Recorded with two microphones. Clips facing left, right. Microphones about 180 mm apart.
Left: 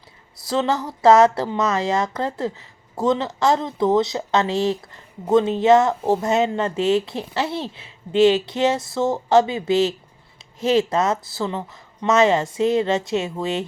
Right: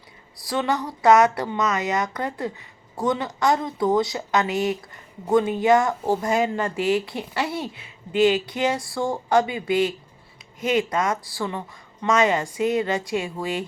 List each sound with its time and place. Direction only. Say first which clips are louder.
0.4 s speech: left 3 dB; 25° left (ahead or behind)